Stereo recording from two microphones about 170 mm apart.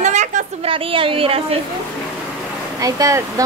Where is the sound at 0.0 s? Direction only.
45° right (ahead or behind).